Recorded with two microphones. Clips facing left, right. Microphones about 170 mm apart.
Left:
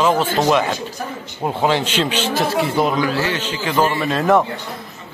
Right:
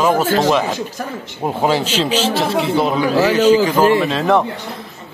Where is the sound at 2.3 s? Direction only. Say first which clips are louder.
Right 2 dB; centre (ahead or behind).